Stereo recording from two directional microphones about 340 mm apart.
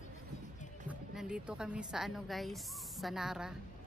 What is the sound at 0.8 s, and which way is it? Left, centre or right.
A woman's voice, centre.